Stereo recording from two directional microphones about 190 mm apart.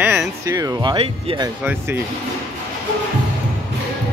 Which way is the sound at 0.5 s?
20° right (ahead or behind).